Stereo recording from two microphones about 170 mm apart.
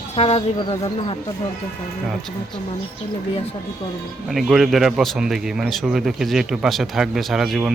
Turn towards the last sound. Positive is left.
turn(degrees=0)  # may be behind; listen again after turning